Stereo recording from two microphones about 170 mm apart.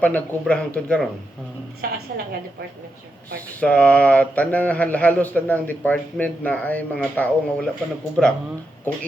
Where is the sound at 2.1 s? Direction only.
60° right (ahead or behind).